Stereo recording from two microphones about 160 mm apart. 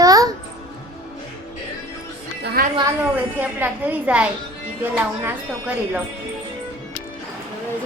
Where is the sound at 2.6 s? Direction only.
70° right (ahead or behind).